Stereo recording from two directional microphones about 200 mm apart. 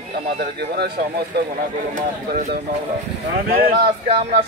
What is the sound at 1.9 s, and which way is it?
Speech, 40° right (ahead or behind).